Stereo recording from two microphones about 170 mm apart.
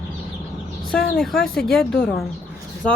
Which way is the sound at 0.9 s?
5° left (ahead or behind).